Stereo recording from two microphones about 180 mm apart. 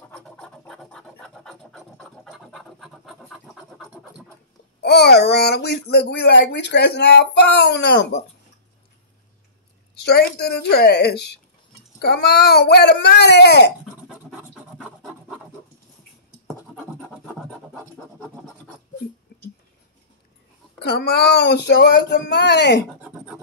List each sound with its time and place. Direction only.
0.1 s scratch: 5° left (ahead or behind)
4.8 s speech: 65° left (ahead or behind)
9.9 s speech: 65° left (ahead or behind)
14.0 s scratch: 5° right (ahead or behind)
17.1 s scratch: 5° right (ahead or behind)
20.8 s speech: 65° left (ahead or behind)
23.0 s a sound: 5° right (ahead or behind)